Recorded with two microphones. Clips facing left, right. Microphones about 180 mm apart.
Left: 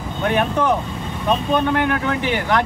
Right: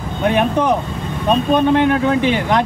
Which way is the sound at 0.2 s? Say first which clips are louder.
Right 3 dB; 20° right (ahead or behind).